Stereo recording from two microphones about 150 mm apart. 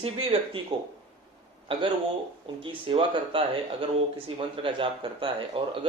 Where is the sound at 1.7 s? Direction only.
35° right (ahead or behind).